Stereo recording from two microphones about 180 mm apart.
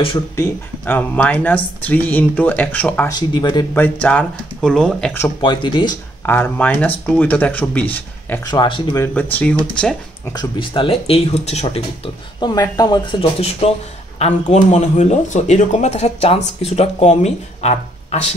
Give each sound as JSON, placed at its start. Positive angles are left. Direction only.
{"t": 0.4, "sound": "speech", "side_deg": 10}
{"t": 3.1, "sound": "speech", "side_deg": 25}
{"t": 3.7, "sound": "speech", "side_deg": 10}
{"t": 5.4, "sound": "speech", "side_deg": 25}
{"t": 6.2, "sound": "speech", "side_deg": 10}
{"t": 8.5, "sound": "speech", "side_deg": 25}
{"t": 9.0, "sound": "speech", "side_deg": 10}
{"t": 10.3, "sound": "speech", "side_deg": 25}